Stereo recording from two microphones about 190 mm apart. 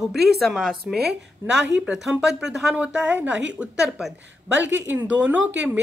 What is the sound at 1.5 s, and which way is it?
Speech, 70° right (ahead or behind).